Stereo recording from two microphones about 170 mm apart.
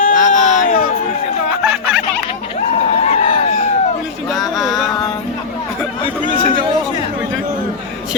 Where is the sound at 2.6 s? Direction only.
40° left (ahead or behind).